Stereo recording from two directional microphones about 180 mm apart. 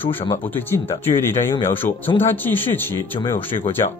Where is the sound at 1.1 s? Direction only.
15° left (ahead or behind).